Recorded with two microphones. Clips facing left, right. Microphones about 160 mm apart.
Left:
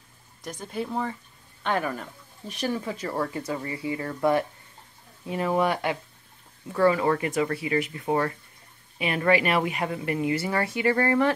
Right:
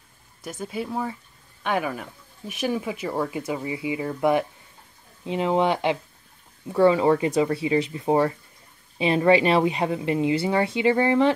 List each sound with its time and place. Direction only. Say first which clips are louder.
0.4 s a woman's voice: right 2 dB; 5° right (ahead or behind); by 11.3 s 20° right (ahead or behind)